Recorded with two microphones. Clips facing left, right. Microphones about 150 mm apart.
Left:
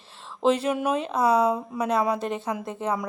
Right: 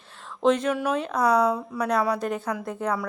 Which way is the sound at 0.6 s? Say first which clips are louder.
Even; 10° left (ahead or behind).